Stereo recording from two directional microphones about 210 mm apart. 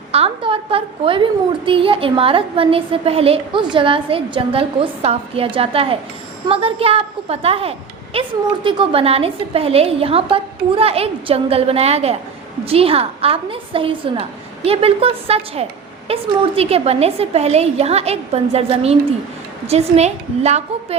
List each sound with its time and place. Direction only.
0.1 s a child's voice: 25° right (ahead or behind)